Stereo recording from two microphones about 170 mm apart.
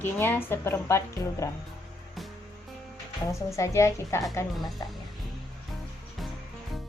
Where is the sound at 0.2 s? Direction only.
15° left (ahead or behind).